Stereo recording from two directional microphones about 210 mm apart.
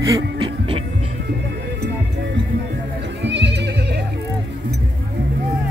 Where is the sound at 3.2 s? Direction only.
55° right (ahead or behind).